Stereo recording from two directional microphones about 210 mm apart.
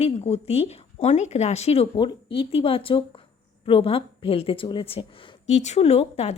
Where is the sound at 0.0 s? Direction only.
30° left (ahead or behind).